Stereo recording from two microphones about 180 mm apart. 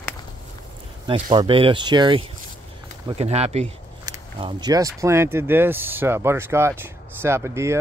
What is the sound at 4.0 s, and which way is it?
Speech, 25° right (ahead or behind).